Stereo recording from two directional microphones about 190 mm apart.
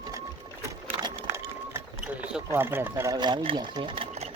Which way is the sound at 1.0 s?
20° right (ahead or behind).